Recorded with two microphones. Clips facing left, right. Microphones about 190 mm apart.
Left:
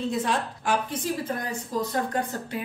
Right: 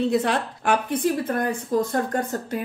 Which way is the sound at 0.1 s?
65° right (ahead or behind).